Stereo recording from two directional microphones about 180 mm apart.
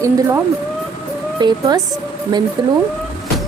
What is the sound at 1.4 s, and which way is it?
Speech, 20° right (ahead or behind).